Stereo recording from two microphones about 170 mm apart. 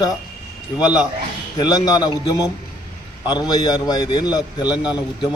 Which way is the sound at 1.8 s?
25° left (ahead or behind).